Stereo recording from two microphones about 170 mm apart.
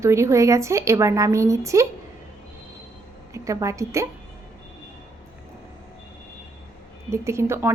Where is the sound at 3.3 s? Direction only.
20° right (ahead or behind).